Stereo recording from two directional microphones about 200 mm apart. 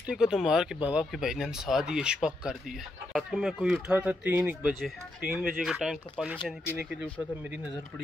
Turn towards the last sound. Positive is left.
turn(degrees=-5)  # may be behind; listen again after turning